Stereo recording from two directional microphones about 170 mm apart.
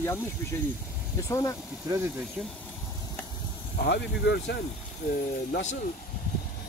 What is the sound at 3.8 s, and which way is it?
Speech, 80° left.